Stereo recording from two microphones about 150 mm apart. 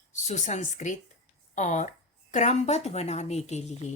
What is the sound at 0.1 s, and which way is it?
A woman's voice, 50° left (ahead or behind).